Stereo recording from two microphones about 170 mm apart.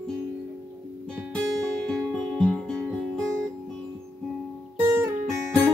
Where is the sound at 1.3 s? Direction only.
5° left (ahead or behind).